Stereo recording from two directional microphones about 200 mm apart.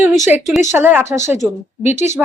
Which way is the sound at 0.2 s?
10° right (ahead or behind).